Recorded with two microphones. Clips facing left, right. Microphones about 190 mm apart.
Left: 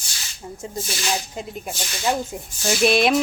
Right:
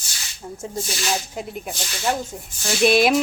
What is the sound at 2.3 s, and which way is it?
Dishes, 15° left (ahead or behind).